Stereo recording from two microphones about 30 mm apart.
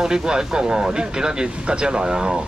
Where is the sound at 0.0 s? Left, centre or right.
Right.